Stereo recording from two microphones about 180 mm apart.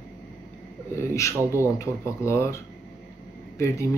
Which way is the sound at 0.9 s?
15° left (ahead or behind).